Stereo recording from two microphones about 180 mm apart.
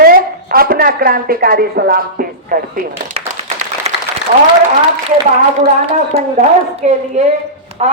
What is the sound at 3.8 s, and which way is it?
Applause, 35° right (ahead or behind).